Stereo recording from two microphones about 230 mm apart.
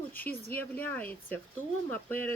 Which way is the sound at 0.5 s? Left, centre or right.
Centre.